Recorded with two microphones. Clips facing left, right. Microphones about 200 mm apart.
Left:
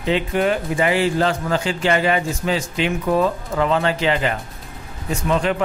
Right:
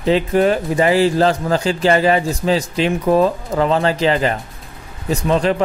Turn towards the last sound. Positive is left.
turn(degrees=-35)  # may be behind; listen again after turning